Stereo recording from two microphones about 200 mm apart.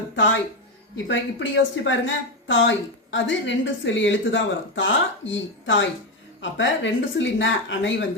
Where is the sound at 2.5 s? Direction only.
65° left (ahead or behind).